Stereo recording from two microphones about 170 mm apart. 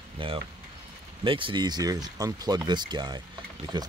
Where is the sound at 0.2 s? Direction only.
30° right (ahead or behind).